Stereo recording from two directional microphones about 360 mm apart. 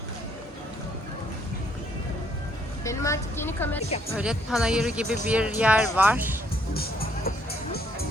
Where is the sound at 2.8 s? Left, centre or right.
Centre.